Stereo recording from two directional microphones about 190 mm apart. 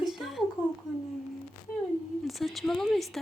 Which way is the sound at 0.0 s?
Centre (ahead or behind).